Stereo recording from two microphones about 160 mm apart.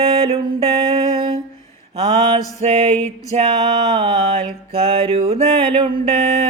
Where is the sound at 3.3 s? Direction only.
40° right (ahead or behind).